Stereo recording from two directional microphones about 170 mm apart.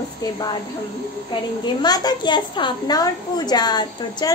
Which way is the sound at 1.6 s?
25° left (ahead or behind).